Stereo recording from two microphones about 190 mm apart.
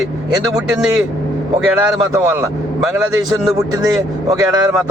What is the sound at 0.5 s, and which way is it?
Speech, 5° right (ahead or behind).